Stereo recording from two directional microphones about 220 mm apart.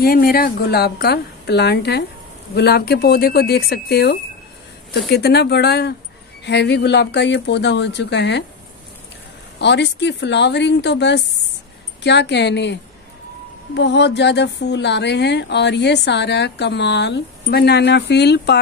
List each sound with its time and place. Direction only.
0.0 s speech: 45° left (ahead or behind)
9.6 s speech: 50° left (ahead or behind)
13.7 s speech: 50° left (ahead or behind)